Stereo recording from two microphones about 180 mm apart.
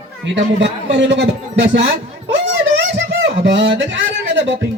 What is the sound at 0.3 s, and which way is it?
Speech, 80° right.